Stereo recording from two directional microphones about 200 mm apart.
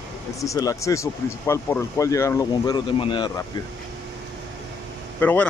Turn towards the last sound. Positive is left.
turn(degrees=10)  # may be behind; listen again after turning